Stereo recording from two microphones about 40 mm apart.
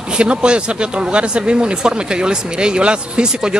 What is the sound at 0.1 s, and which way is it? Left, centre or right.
Speech, right.